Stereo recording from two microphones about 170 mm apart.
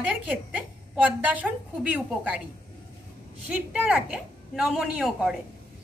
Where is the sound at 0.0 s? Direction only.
10° right (ahead or behind).